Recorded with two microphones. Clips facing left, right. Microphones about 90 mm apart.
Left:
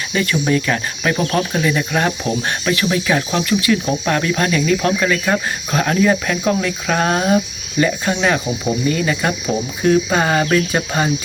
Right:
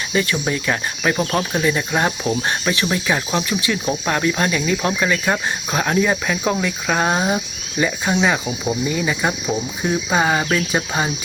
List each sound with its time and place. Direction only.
0.1 s cricket: 20° right (ahead or behind)